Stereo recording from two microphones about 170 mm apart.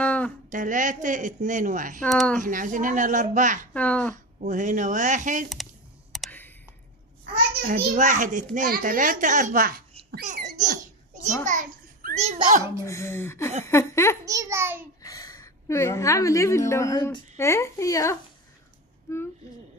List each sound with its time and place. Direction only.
0.0 s a sound: 10° left (ahead or behind)
0.5 s a child's voice: 50° right (ahead or behind)
2.0 s speech: centre (ahead or behind)
2.4 s a child's voice: 50° right (ahead or behind)
3.7 s speech: 10° left (ahead or behind)
4.1 s a child's voice: 45° right (ahead or behind)
6.1 s a sound: centre (ahead or behind)
7.6 s a child's voice: 50° right (ahead or behind)
10.2 s laughter: 45° right (ahead or behind)
11.4 s a sound: 50° right (ahead or behind)
12.2 s a child's voice: 45° right (ahead or behind)
12.8 s speech: 15° left (ahead or behind)
14.2 s a child's voice: 20° right (ahead or behind)
15.0 s a woman's voice: 20° left (ahead or behind)